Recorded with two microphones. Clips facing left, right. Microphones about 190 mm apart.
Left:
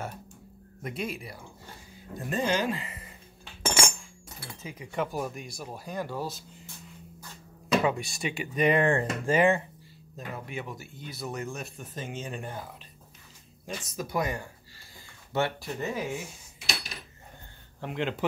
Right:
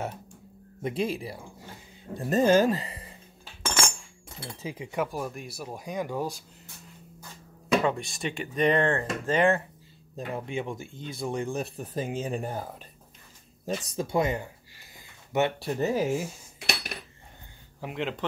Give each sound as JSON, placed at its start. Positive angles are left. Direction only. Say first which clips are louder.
{"t": 0.8, "sound": "speech", "louder": "right 6 dB", "side_deg": -30}
{"t": 4.4, "sound": "speech", "louder": "right 5 dB", "side_deg": -30}
{"t": 4.9, "sound": "speech", "louder": "even", "side_deg": 0}
{"t": 7.8, "sound": "speech", "louder": "even", "side_deg": 0}
{"t": 10.1, "sound": "speech", "louder": "right 5 dB", "side_deg": -25}
{"t": 13.7, "sound": "speech", "louder": "right 5 dB", "side_deg": -25}
{"t": 15.6, "sound": "speech", "louder": "right 6 dB", "side_deg": -35}
{"t": 16.5, "sound": "cutlery", "louder": "right 3 dB", "side_deg": -60}
{"t": 17.7, "sound": "speech", "louder": "left 1 dB", "side_deg": -5}